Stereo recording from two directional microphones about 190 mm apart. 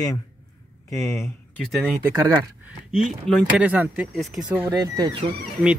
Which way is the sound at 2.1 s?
15° right (ahead or behind).